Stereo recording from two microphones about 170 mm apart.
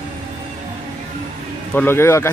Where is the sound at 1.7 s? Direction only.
10° left (ahead or behind).